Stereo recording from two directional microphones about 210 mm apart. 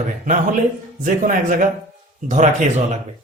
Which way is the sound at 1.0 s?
40° right (ahead or behind).